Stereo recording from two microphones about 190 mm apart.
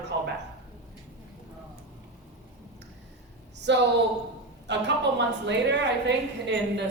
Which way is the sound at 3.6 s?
65° right (ahead or behind).